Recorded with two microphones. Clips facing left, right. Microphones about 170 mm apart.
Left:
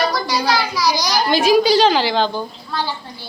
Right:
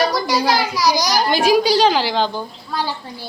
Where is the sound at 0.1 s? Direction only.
45° right (ahead or behind).